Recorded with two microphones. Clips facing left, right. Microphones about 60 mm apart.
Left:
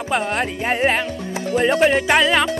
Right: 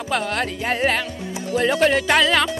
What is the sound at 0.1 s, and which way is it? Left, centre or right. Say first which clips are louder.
Music: left 2 dB; left.